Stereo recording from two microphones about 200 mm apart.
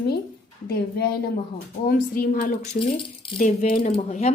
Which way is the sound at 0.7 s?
50° left (ahead or behind).